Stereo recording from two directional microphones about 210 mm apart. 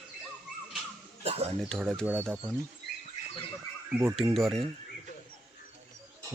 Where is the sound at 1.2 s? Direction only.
25° right (ahead or behind).